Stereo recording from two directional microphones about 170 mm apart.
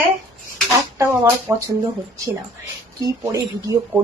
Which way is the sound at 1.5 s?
25° right (ahead or behind).